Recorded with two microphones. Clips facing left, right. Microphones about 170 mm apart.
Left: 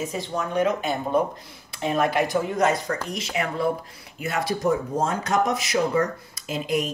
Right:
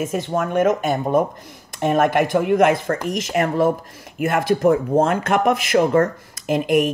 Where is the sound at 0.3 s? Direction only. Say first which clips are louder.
Right 5 dB; 50° right (ahead or behind).